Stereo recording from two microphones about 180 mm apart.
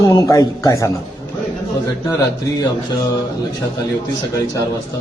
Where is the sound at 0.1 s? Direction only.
20° left (ahead or behind).